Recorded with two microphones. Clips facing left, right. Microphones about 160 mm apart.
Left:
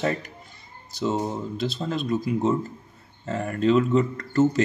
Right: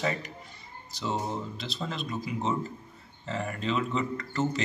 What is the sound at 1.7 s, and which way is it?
Speech, 45° left (ahead or behind).